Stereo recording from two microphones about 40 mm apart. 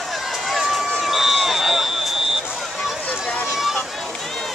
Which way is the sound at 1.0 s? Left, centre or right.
Centre.